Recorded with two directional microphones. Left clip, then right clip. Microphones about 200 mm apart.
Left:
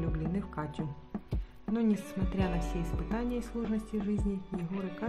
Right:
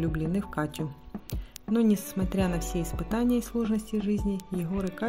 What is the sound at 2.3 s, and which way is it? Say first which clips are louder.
Speech: right 5 dB; 35° right (ahead or behind).